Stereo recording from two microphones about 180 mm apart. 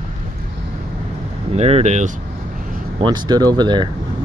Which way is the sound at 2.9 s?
25° right (ahead or behind).